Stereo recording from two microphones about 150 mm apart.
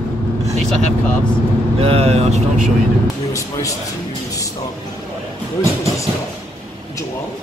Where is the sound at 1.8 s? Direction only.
40° right (ahead or behind).